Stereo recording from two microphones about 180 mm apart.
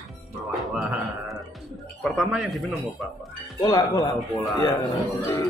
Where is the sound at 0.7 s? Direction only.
Centre (ahead or behind).